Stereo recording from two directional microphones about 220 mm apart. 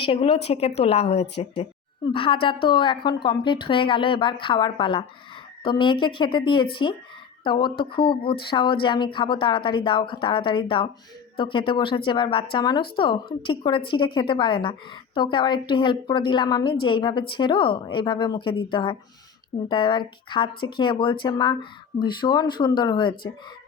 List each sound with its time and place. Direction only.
0.0 s a woman's voice: 25° left (ahead or behind)